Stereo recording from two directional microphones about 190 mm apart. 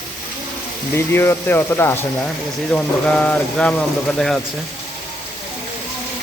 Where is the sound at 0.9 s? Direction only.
15° left (ahead or behind).